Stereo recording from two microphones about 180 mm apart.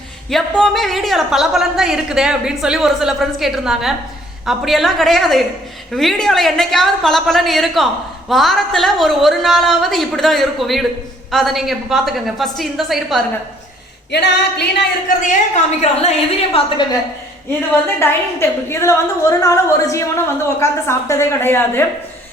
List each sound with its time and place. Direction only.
0.3 s a woman's voice: centre (ahead or behind)
14.1 s female singing: 70° left (ahead or behind)
15.8 s a woman's voice: 35° left (ahead or behind)
18.0 s a woman's voice: 15° left (ahead or behind)